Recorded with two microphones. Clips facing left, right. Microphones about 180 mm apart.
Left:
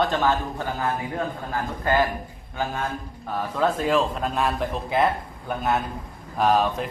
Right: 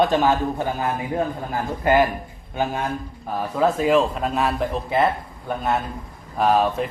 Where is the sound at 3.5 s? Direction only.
5° right (ahead or behind).